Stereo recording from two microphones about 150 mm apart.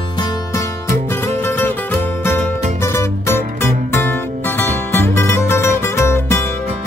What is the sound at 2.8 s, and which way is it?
Music, 15° left (ahead or behind).